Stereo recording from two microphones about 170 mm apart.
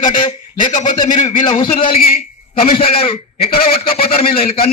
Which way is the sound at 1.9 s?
60° left (ahead or behind).